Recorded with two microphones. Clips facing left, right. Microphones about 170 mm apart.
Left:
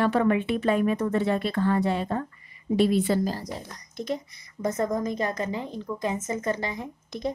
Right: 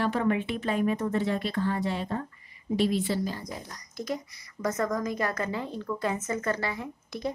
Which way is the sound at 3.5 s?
25° left (ahead or behind).